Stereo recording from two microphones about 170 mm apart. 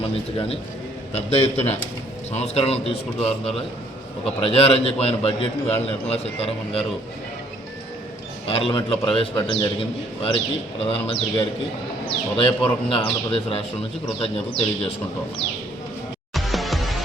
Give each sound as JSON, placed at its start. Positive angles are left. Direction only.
{"t": 0.0, "sound": "a man's voice", "side_deg": 35}
{"t": 8.4, "sound": "a man's voice", "side_deg": 35}
{"t": 16.3, "sound": "music", "side_deg": 0}